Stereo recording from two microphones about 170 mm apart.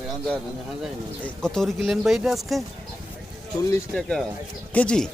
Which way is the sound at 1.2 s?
5° left (ahead or behind).